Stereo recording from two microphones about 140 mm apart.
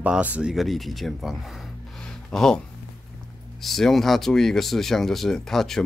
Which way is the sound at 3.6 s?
Centre (ahead or behind).